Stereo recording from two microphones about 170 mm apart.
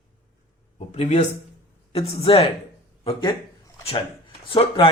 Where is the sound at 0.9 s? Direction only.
40° left (ahead or behind).